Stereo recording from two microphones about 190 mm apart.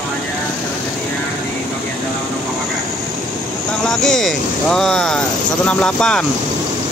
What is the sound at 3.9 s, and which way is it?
Speech, centre (ahead or behind).